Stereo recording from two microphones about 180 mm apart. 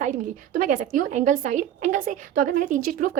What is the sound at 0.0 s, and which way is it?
A woman's voice, 45° right (ahead or behind).